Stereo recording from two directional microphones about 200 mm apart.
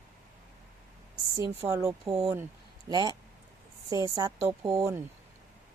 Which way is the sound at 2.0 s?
30° right (ahead or behind).